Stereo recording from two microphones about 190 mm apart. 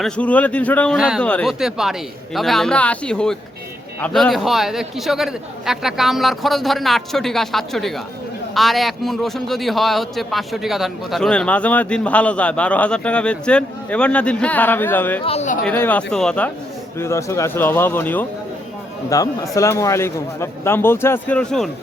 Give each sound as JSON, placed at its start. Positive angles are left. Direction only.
{"t": 0.0, "sound": "a man's voice", "side_deg": 5}
{"t": 0.9, "sound": "a man's voice", "side_deg": -5}
{"t": 15.2, "sound": "speech", "side_deg": 35}
{"t": 15.6, "sound": "a man's voice", "side_deg": 10}
{"t": 17.0, "sound": "a man's voice", "side_deg": 15}